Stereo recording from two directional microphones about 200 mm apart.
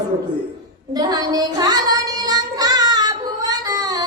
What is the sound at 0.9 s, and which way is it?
Child singing, 20° right (ahead or behind).